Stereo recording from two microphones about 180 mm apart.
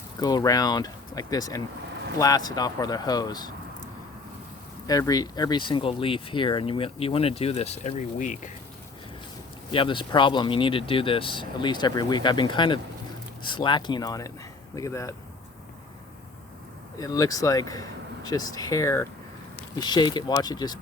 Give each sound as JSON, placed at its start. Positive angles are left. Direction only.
{"t": 0.2, "sound": "speech", "side_deg": 20}
{"t": 4.9, "sound": "speech", "side_deg": 20}
{"t": 9.7, "sound": "speech", "side_deg": 25}
{"t": 17.0, "sound": "speech", "side_deg": 20}